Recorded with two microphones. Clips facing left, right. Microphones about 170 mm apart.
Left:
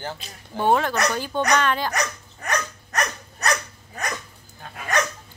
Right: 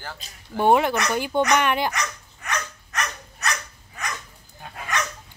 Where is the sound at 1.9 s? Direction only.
40° left (ahead or behind).